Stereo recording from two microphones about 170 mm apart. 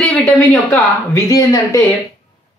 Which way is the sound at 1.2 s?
20° left (ahead or behind).